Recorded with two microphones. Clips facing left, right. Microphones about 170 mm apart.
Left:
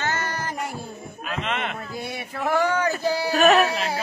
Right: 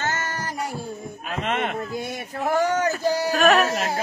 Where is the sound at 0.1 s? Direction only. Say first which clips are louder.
Left 1 dB; 40° right (ahead or behind).